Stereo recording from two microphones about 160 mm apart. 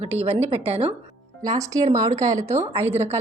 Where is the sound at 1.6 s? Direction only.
20° right (ahead or behind).